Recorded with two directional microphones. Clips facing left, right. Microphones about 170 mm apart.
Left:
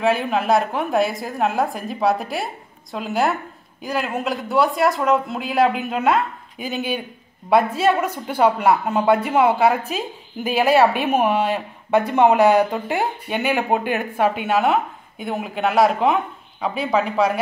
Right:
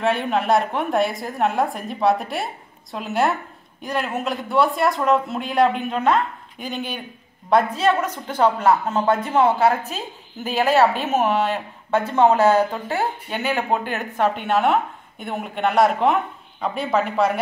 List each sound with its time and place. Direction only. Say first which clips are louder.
0.0 s a woman's voice: left 1 dB; centre (ahead or behind)